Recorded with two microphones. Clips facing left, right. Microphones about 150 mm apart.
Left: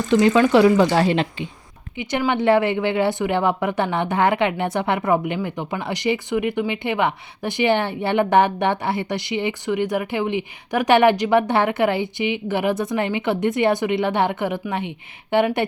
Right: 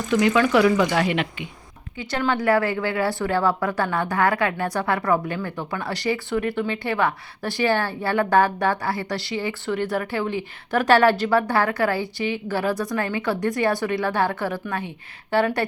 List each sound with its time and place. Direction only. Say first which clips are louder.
0.1 s speech: left 3 dB; 25° left (ahead or behind)
2.0 s speech: left 3 dB; 15° left (ahead or behind)